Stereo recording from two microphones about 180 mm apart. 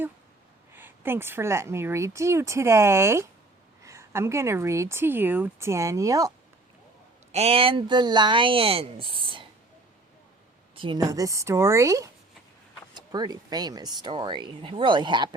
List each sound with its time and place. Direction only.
0.7 s speech: 10° right (ahead or behind)
7.3 s speech: 35° right (ahead or behind)
10.8 s speech: 25° right (ahead or behind)